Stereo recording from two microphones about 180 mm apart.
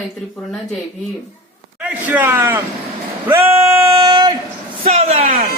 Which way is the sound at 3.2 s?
15° right (ahead or behind).